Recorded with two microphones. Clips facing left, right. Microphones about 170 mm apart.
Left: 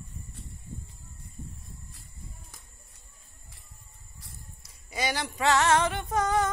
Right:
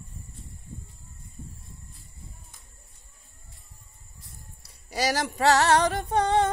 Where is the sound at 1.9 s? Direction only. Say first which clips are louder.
Even; 80° left.